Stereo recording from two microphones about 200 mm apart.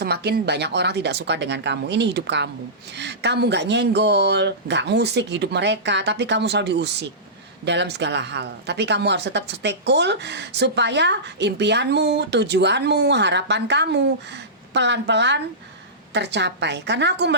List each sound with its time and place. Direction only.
0.0 s a woman's voice: 55° right (ahead or behind)